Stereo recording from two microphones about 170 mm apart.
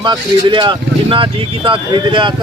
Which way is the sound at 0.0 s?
25° right (ahead or behind).